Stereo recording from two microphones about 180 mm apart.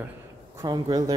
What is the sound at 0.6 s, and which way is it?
Speech, 20° right (ahead or behind).